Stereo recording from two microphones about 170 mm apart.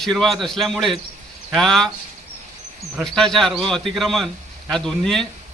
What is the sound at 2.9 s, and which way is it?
A man's voice, centre (ahead or behind).